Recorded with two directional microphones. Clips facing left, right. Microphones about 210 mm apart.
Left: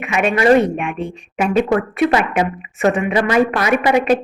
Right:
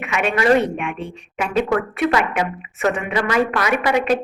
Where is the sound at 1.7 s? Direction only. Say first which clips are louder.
Left 3 dB; 30° left (ahead or behind).